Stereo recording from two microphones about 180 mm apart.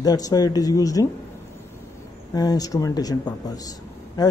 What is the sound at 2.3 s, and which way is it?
Speech, 20° left (ahead or behind).